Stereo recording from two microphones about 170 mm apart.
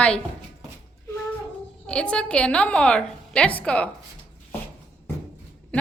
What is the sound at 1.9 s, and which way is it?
A woman's voice, 5° left (ahead or behind).